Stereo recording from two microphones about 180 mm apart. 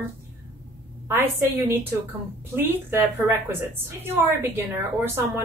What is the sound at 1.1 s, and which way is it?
Speech, 10° right (ahead or behind).